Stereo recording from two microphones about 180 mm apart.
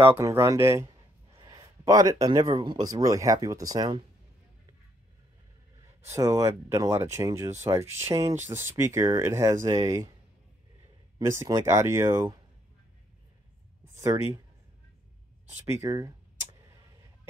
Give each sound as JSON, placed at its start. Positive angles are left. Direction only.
{"t": 0.1, "sound": "speech", "side_deg": -15}
{"t": 6.0, "sound": "speech", "side_deg": -20}
{"t": 11.1, "sound": "speech", "side_deg": -20}
{"t": 13.9, "sound": "speech", "side_deg": -15}
{"t": 15.5, "sound": "speech", "side_deg": -15}